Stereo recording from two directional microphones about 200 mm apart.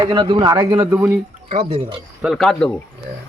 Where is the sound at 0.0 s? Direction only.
20° right (ahead or behind).